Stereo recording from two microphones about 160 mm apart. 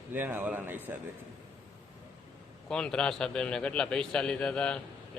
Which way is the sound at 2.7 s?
5° left (ahead or behind).